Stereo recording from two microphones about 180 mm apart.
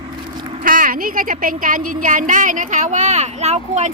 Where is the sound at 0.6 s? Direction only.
50° right (ahead or behind).